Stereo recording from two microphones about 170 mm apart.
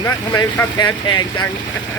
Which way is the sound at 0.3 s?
25° left (ahead or behind).